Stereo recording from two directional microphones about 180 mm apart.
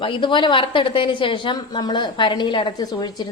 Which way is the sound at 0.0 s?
30° left (ahead or behind).